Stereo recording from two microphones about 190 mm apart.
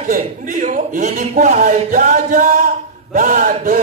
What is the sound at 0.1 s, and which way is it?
A man's voice, 45° right (ahead or behind).